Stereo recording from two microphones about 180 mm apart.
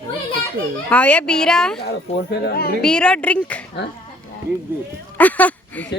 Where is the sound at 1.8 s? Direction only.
65° left (ahead or behind).